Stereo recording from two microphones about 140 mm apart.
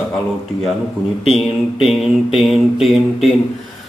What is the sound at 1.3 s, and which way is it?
Mantra, centre (ahead or behind).